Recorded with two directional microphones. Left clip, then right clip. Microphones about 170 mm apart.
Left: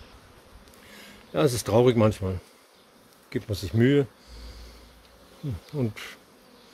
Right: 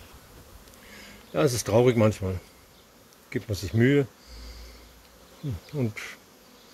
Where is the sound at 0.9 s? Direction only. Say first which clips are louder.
Even; 5° left (ahead or behind).